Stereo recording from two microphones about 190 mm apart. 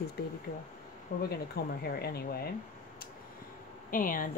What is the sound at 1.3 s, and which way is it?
Speech, 55° left (ahead or behind).